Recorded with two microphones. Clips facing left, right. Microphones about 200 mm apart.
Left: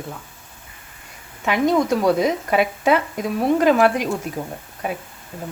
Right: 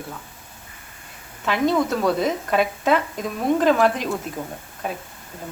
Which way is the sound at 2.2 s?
5° left (ahead or behind).